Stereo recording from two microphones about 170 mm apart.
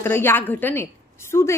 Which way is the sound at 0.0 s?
15° left (ahead or behind).